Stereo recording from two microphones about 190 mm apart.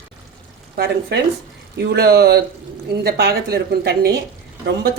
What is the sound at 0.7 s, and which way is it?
A woman's voice, 60° right (ahead or behind).